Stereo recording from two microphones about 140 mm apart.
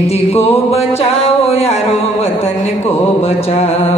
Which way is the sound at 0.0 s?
45° left (ahead or behind).